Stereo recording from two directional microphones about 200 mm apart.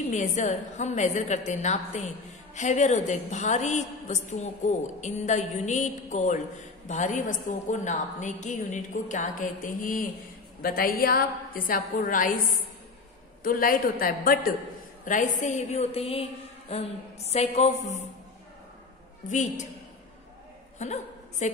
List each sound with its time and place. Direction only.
0.1 s a woman's voice: 35° left (ahead or behind)
13.4 s a woman's voice: 45° left (ahead or behind)
19.2 s a woman's voice: 40° left (ahead or behind)
20.8 s a woman's voice: 35° left (ahead or behind)